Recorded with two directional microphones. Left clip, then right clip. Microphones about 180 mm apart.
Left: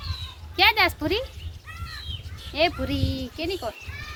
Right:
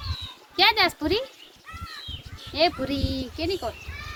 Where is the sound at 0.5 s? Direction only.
20° left (ahead or behind).